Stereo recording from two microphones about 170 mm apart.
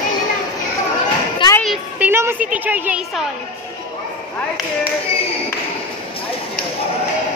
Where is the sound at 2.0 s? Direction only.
10° right (ahead or behind).